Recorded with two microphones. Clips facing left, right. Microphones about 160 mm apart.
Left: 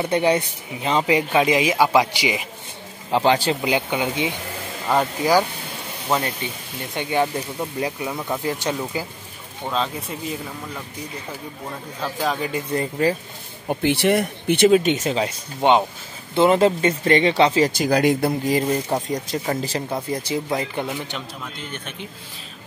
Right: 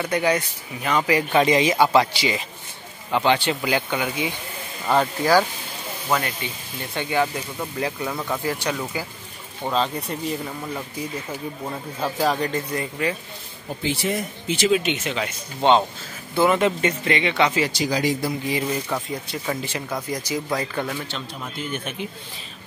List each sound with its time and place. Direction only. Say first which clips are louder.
0.0 s speech: left 3 dB; 30° left (ahead or behind)
1.3 s speech: right 3 dB; 5° left (ahead or behind)
3.1 s speech: left 2 dB; 30° left (ahead or behind)
6.0 s speech: left 1 dB; 20° left (ahead or behind)
9.7 s speech: right 2 dB; centre (ahead or behind)
12.0 s speech: right 2 dB; centre (ahead or behind)
13.0 s speech: left 5 dB; 35° left (ahead or behind)
13.7 s speech: left 6 dB; 65° left (ahead or behind)
14.7 s speech: left 5 dB; 40° left (ahead or behind)
15.6 s speech: left 1 dB; 15° left (ahead or behind)
16.3 s speech: left 3 dB; 30° left (ahead or behind)
17.6 s speech: left 5 dB; 55° left (ahead or behind)
18.6 s speech: left 4 dB; 40° left (ahead or behind); by 21.2 s 20° left (ahead or behind)
21.5 s speech: right 4 dB; 10° right (ahead or behind)